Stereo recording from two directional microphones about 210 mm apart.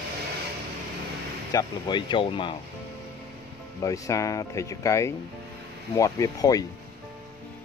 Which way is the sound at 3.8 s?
15° left (ahead or behind).